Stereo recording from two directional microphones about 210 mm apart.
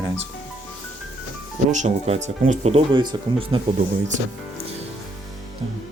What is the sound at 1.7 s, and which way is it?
Speech, 30° right (ahead or behind).